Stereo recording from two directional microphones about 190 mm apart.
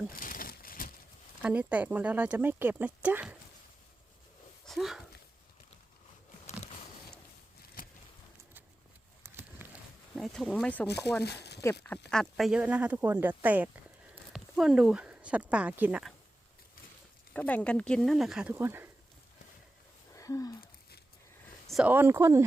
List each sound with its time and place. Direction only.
0.1 s a sound: 45° left (ahead or behind)
1.4 s speech: 5° right (ahead or behind)
4.6 s speech: centre (ahead or behind)
7.8 s a sound: 50° left (ahead or behind)
9.2 s a sound: 10° right (ahead or behind)
10.2 s speech: centre (ahead or behind)
11.2 s speech: 60° left (ahead or behind)
11.6 s speech: 10° left (ahead or behind); by 16.1 s 5° right (ahead or behind)
17.3 s speech: 10° left (ahead or behind); by 18.9 s 10° right (ahead or behind)
20.1 s speech: 15° left (ahead or behind)
21.7 s speech: 5° right (ahead or behind)